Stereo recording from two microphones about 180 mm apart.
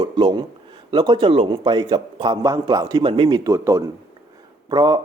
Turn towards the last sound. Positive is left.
turn(degrees=-20)  # may be behind; listen again after turning